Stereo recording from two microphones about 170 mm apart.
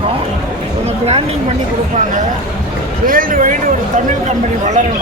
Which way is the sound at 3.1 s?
55° right (ahead or behind).